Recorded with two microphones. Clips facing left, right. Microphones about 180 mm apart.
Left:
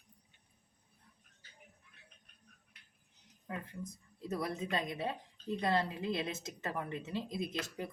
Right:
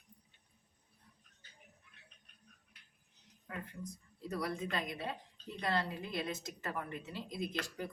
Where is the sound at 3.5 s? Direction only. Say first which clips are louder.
Left 2 dB; 25° left (ahead or behind).